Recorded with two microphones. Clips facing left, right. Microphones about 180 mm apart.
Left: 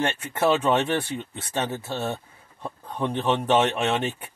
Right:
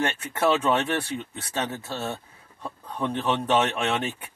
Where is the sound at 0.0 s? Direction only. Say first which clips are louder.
Left 1 dB; 20° left (ahead or behind).